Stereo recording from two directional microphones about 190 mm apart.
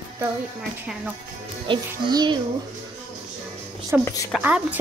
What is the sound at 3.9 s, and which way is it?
Speech, 10° right (ahead or behind).